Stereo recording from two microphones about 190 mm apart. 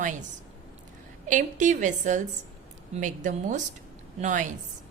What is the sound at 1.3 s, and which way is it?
A woman's voice, 40° right (ahead or behind).